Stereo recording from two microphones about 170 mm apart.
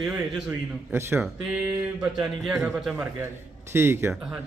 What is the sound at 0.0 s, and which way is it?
Speech, 5° right (ahead or behind).